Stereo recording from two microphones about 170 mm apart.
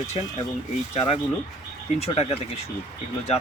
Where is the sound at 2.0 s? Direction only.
35° left (ahead or behind).